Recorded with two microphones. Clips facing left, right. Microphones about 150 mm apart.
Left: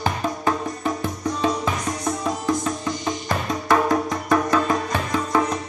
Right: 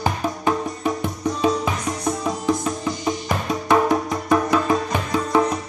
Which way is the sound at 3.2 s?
15° right (ahead or behind).